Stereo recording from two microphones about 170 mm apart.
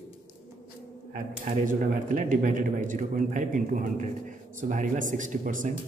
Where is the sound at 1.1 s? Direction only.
50° right (ahead or behind).